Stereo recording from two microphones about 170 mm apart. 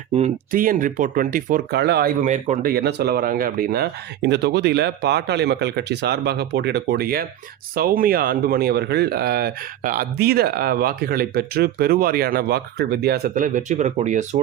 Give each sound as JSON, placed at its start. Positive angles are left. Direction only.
{"t": 0.5, "sound": "speech", "side_deg": -55}
{"t": 1.8, "sound": "speech", "side_deg": -70}
{"t": 2.2, "sound": "speech", "side_deg": -45}
{"t": 2.7, "sound": "speech", "side_deg": -70}